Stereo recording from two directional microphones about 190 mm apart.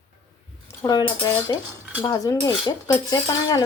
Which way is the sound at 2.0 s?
20° left (ahead or behind).